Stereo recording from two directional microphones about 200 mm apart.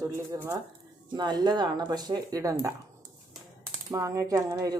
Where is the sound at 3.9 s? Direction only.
15° right (ahead or behind).